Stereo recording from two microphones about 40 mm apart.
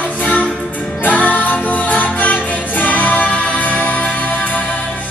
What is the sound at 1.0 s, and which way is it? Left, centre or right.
Music, left.